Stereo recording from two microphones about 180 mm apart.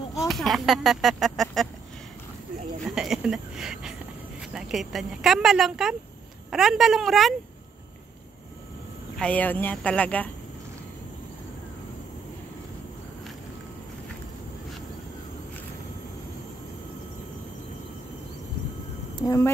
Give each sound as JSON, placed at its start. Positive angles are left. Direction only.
{"t": 0.3, "sound": "speech", "side_deg": 0}
{"t": 2.8, "sound": "speech", "side_deg": 0}
{"t": 9.1, "sound": "speech", "side_deg": 5}
{"t": 19.2, "sound": "a woman's voice", "side_deg": 15}